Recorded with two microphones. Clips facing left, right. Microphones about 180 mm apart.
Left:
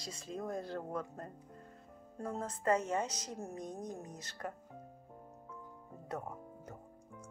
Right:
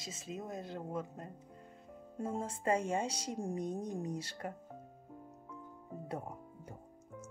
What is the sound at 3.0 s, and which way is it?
Speech, 30° right (ahead or behind).